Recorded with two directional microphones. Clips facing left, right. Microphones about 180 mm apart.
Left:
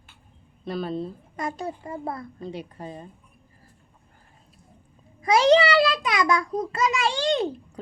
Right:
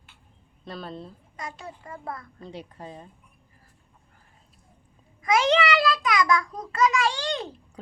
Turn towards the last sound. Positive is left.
turn(degrees=25)  # may be behind; listen again after turning